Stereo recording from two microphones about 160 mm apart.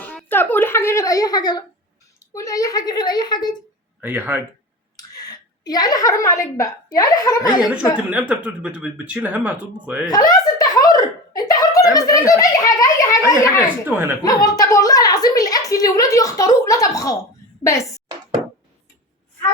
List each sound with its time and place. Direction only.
0.3 s a woman's voice: 10° left (ahead or behind)
4.0 s speech: 10° right (ahead or behind)
4.9 s a woman's voice: 25° left (ahead or behind)
8.1 s speech: 10° right (ahead or behind)
10.1 s a child's voice: 25° left (ahead or behind)